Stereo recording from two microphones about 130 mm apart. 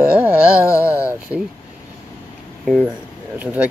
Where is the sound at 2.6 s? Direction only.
5° right (ahead or behind).